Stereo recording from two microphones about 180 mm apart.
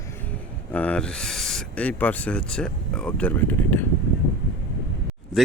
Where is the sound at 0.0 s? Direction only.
10° left (ahead or behind).